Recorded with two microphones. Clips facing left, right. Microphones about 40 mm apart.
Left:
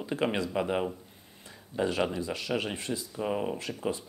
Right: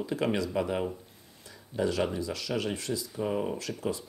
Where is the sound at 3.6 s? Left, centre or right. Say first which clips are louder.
Even; left.